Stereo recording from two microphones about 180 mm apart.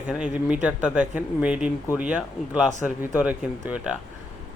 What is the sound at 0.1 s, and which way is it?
Speech, 5° right (ahead or behind).